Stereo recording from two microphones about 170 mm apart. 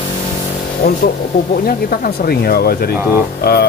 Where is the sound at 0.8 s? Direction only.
60° left (ahead or behind).